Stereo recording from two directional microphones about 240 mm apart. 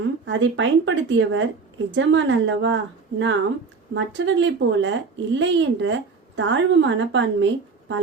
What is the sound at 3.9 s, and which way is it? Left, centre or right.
Speech, right.